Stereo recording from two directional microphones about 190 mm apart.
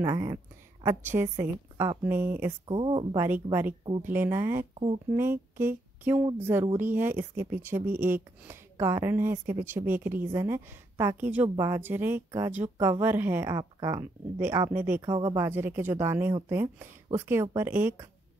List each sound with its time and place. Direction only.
0.0 s speech: 15° right (ahead or behind)
2.7 s speech: 25° right (ahead or behind)
4.0 s speech: 10° right (ahead or behind)
5.1 s a sound: 10° right (ahead or behind)
6.4 s speech: 15° right (ahead or behind)